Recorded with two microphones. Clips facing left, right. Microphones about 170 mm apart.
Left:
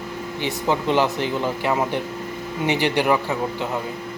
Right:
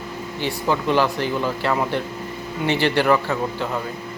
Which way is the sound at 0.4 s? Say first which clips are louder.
Even; 20° left (ahead or behind).